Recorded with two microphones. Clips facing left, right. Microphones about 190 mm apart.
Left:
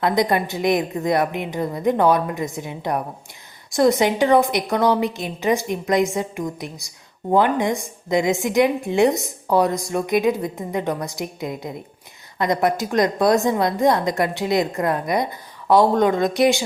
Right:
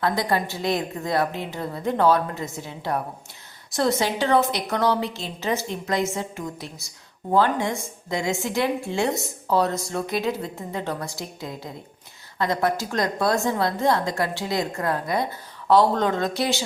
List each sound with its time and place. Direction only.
0.0 s a woman's voice: 20° left (ahead or behind)